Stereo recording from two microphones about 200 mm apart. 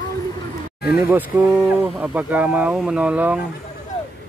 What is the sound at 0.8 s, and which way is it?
Speech, 10° right (ahead or behind).